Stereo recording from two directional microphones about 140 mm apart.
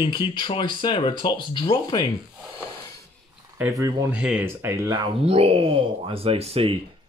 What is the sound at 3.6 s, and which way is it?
Speech, 20° right (ahead or behind).